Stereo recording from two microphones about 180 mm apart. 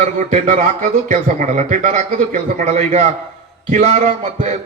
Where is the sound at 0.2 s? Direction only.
45° right (ahead or behind).